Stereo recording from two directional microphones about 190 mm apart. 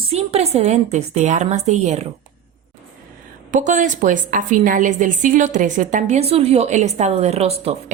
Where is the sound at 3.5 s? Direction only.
40° right (ahead or behind).